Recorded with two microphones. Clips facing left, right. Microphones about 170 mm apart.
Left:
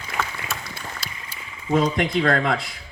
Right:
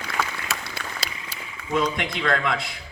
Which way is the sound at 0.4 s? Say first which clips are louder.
Right 1 dB; 80° right.